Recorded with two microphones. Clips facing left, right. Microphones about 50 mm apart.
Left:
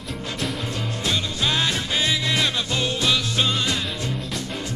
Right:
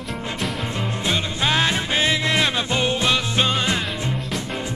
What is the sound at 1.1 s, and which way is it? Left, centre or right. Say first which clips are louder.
Music: right 2 dB; right.